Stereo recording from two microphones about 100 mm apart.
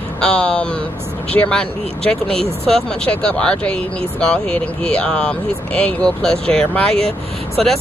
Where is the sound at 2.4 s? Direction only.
80° right.